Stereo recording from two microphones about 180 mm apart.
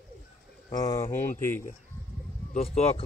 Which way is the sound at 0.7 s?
20° left (ahead or behind).